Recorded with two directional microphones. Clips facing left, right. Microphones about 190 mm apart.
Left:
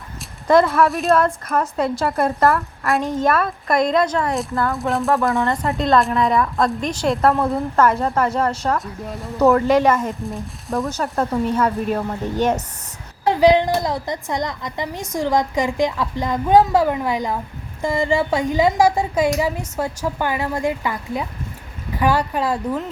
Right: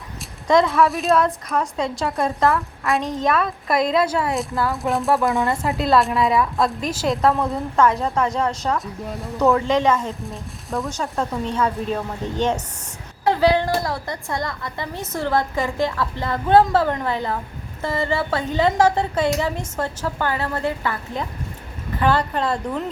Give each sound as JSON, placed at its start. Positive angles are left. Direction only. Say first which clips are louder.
{"t": 0.4, "sound": "a woman's voice", "louder": "left 2 dB", "side_deg": 0}
{"t": 10.2, "sound": "a woman's voice", "louder": "left 4 dB", "side_deg": 0}